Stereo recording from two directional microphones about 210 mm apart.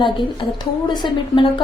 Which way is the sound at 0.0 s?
25° left (ahead or behind).